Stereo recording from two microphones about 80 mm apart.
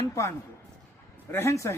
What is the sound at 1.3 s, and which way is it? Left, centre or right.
Speech, left.